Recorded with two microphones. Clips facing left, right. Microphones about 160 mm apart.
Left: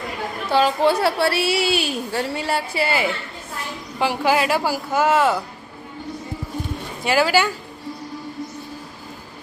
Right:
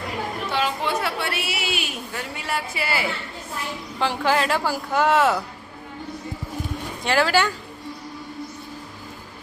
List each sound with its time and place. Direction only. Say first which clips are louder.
0.5 s a woman's voice: left 8 dB; 35° left (ahead or behind)
3.9 s speech: left 3 dB; 10° left (ahead or behind)
7.0 s speech: left 2 dB; 5° left (ahead or behind)